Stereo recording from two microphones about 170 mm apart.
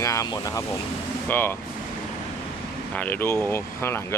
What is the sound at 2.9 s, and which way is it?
Speech, 10° left (ahead or behind).